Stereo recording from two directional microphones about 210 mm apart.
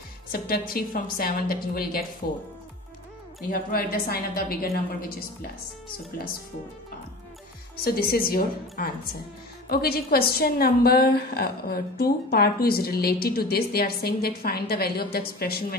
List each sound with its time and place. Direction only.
0.3 s a woman's voice: 45° left (ahead or behind)
3.3 s a woman's voice: 45° left (ahead or behind)
7.7 s a woman's voice: 45° left (ahead or behind)